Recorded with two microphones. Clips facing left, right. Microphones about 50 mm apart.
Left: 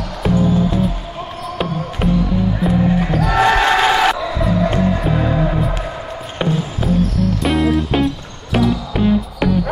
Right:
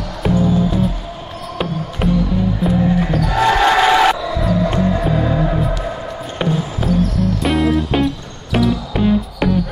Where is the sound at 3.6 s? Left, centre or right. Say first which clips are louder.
Right 2 dB; centre.